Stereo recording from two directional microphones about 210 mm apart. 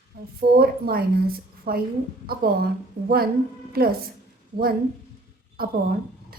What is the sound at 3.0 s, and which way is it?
Speech, 45° right (ahead or behind).